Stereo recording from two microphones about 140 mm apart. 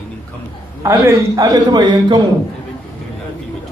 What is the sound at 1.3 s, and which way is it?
Speech, 30° right (ahead or behind).